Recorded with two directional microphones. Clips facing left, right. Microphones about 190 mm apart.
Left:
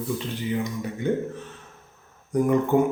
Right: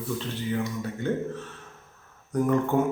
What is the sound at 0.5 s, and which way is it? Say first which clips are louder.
Speech: left 1 dB; 15° left (ahead or behind).